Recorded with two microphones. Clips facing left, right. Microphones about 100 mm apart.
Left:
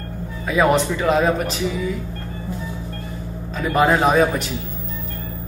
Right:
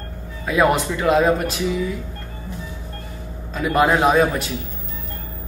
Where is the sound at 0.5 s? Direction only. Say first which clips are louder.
Left 1 dB; centre (ahead or behind).